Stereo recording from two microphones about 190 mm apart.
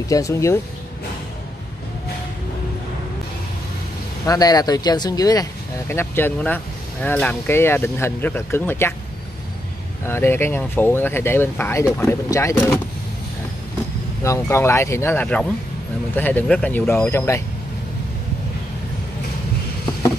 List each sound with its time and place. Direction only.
0.1 s speech: 15° left (ahead or behind)
4.3 s speech: 20° left (ahead or behind)
10.0 s speech: 10° left (ahead or behind)
14.2 s speech: 15° left (ahead or behind)